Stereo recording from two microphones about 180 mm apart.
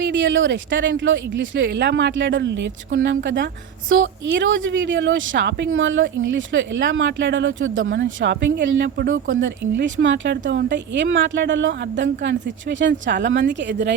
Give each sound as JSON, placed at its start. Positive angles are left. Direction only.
{"t": 0.0, "sound": "speech", "side_deg": -90}
{"t": 8.6, "sound": "speech", "side_deg": -70}
{"t": 9.2, "sound": "speech", "side_deg": -90}